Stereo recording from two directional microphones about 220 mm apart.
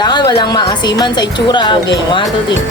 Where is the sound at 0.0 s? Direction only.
20° left (ahead or behind).